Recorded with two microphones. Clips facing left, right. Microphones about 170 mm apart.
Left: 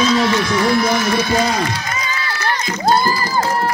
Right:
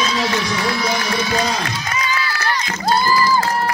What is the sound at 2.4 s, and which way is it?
Music, 45° left (ahead or behind).